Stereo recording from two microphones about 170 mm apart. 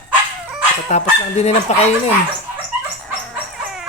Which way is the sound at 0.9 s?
40° left (ahead or behind).